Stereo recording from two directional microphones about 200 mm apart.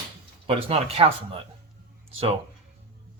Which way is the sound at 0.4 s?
30° right (ahead or behind).